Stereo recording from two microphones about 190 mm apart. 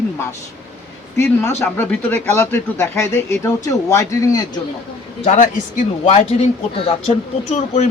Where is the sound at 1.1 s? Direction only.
15° left (ahead or behind).